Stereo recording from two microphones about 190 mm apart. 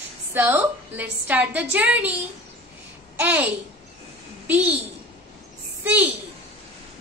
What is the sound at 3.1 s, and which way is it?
A child's voice, 10° right (ahead or behind).